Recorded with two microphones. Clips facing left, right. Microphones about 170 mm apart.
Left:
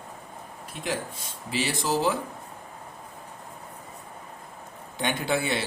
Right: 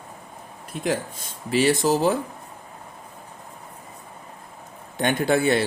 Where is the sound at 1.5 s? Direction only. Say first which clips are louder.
Right 7 dB; 50° right (ahead or behind).